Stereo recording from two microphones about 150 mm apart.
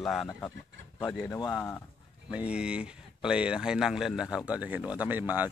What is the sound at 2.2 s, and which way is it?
Speech, 5° right (ahead or behind).